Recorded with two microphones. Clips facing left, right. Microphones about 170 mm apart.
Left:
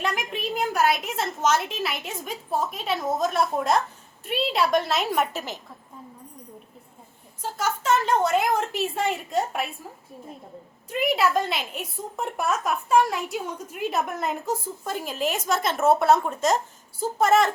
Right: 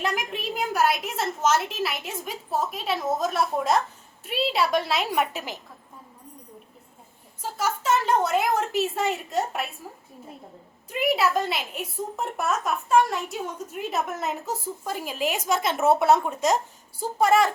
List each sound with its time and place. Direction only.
0.0 s a child's voice: 5° right (ahead or behind)
7.6 s a child's voice: 5° right (ahead or behind)
10.8 s a child's voice: centre (ahead or behind)